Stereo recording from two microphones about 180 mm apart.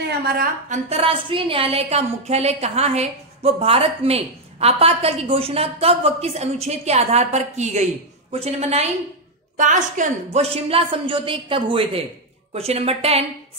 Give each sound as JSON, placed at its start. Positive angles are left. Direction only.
{"t": 0.7, "sound": "a woman's voice", "side_deg": -35}